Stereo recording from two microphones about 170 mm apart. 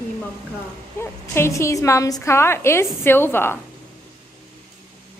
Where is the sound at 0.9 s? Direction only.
15° left (ahead or behind).